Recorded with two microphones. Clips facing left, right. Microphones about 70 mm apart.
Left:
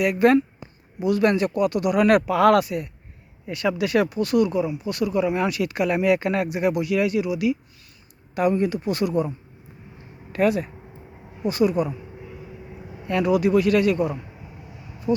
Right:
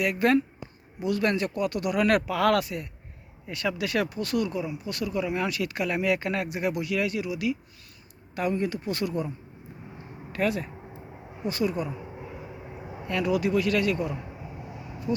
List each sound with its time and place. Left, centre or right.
0.0 s speech: centre
10.3 s speech: centre
13.1 s speech: left